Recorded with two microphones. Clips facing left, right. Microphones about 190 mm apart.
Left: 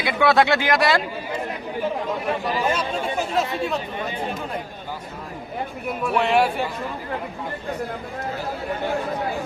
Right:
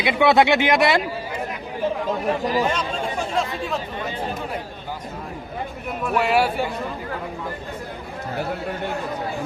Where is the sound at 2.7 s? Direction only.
5° left (ahead or behind).